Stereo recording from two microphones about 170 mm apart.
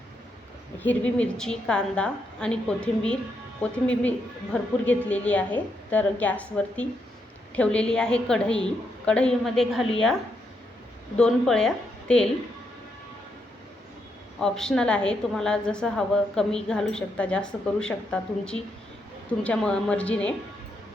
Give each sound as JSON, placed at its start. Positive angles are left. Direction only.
{"t": 1.0, "sound": "a woman's voice", "side_deg": 5}
{"t": 11.2, "sound": "a woman's voice", "side_deg": 5}
{"t": 14.3, "sound": "a woman's voice", "side_deg": 5}